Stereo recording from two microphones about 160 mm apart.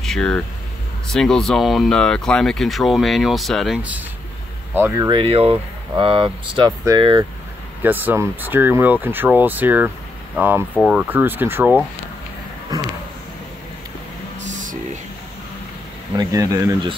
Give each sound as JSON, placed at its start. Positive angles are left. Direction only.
{"t": 0.0, "sound": "speech", "side_deg": 5}
{"t": 5.1, "sound": "speech", "side_deg": -35}
{"t": 7.8, "sound": "speech", "side_deg": -10}
{"t": 14.4, "sound": "music", "side_deg": -50}
{"t": 16.2, "sound": "speech", "side_deg": -20}